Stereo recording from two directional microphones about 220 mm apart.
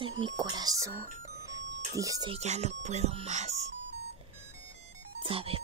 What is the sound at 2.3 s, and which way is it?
Speech, 30° right (ahead or behind).